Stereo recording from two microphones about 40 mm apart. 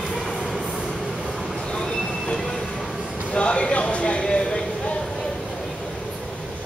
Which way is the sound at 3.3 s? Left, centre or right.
Left.